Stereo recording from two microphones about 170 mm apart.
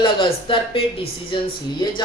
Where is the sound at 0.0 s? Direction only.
30° left (ahead or behind).